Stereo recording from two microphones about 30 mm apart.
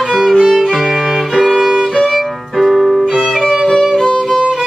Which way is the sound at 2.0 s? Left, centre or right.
Centre.